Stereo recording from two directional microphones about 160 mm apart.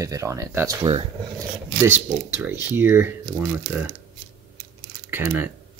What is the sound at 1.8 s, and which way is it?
Speech, 15° right (ahead or behind).